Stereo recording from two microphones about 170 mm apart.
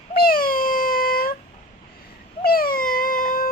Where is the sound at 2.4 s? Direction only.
60° left (ahead or behind).